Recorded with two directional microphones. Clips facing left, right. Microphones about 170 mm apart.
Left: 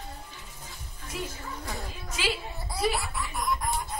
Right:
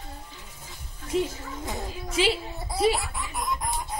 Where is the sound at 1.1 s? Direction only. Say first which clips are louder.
Right 9 dB; 25° right (ahead or behind).